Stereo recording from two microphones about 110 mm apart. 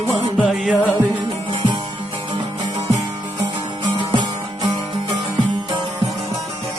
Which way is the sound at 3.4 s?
45° right (ahead or behind).